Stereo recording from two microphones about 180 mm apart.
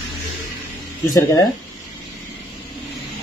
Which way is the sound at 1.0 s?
20° left (ahead or behind).